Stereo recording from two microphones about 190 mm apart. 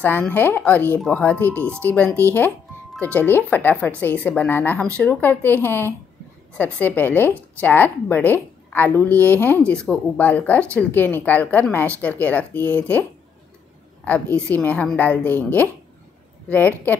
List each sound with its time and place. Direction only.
0.0 s speech: 10° left (ahead or behind)
14.5 s speech: 10° left (ahead or behind)